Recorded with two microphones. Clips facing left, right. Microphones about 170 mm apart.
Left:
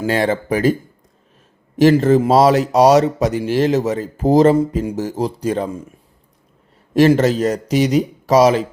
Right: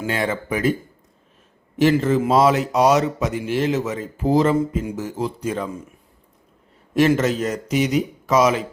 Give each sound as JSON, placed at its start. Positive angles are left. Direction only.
{"t": 0.0, "sound": "speech", "side_deg": 35}
{"t": 6.9, "sound": "speech", "side_deg": 35}